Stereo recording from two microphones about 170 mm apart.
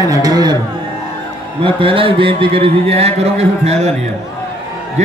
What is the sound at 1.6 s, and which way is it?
Speech, 30° right (ahead or behind).